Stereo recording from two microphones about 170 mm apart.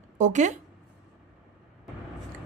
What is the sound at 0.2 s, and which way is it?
Speech, 45° right (ahead or behind).